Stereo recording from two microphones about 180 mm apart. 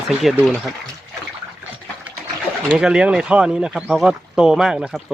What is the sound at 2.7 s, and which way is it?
Speech, 5° right (ahead or behind).